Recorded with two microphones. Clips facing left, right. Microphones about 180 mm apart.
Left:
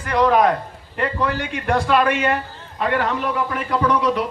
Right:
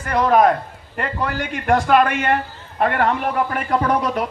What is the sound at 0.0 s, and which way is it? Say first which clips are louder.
A man's voice: right 1 dB; 45° right (ahead or behind).